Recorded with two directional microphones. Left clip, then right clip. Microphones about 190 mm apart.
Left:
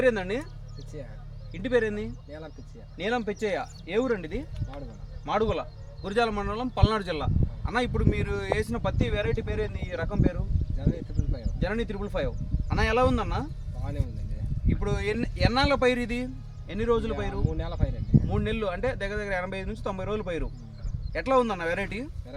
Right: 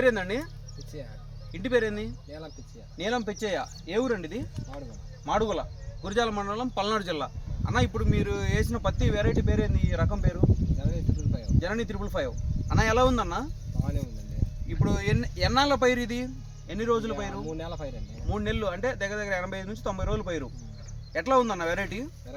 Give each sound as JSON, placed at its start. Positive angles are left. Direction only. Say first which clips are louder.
{"t": 0.0, "sound": "speech", "louder": "even", "side_deg": 20}
{"t": 1.5, "sound": "speech", "louder": "even", "side_deg": 15}
{"t": 10.8, "sound": "speech", "louder": "left 1 dB", "side_deg": -5}
{"t": 11.6, "sound": "speech", "louder": "left 2 dB", "side_deg": 15}
{"t": 13.8, "sound": "speech", "louder": "even", "side_deg": -5}
{"t": 14.8, "sound": "speech", "louder": "right 1 dB", "side_deg": 15}
{"t": 17.5, "sound": "speech", "louder": "even", "side_deg": -5}
{"t": 18.3, "sound": "speech", "louder": "right 4 dB", "side_deg": 15}